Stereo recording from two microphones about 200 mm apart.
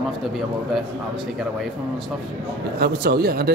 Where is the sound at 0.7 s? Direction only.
Centre (ahead or behind).